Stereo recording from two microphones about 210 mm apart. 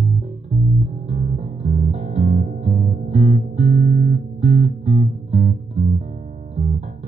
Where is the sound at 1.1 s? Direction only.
35° right (ahead or behind).